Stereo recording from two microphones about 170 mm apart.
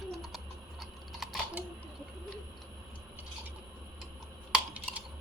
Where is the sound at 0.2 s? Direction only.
Centre (ahead or behind).